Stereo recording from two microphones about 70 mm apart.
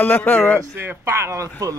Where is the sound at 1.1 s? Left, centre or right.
Right.